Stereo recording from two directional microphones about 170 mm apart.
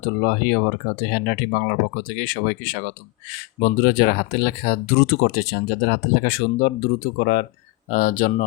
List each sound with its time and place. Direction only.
0.2 s speech: 60° left (ahead or behind)